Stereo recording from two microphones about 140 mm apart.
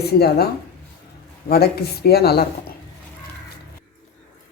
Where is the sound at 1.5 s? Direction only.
90° left.